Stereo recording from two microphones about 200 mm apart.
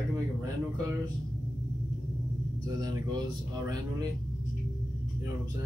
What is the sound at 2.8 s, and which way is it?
Speech, 20° right (ahead or behind).